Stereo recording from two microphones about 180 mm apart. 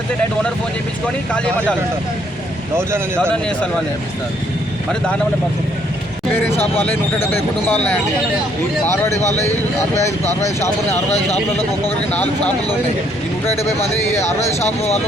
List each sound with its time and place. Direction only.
6.3 s speech: 10° left (ahead or behind)
9.0 s speech: 40° left (ahead or behind)
10.4 s speech: 15° left (ahead or behind)
12.1 s speech: 10° left (ahead or behind)